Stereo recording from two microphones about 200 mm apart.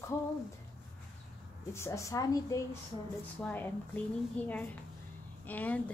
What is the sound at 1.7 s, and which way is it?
A woman's voice, 15° left (ahead or behind).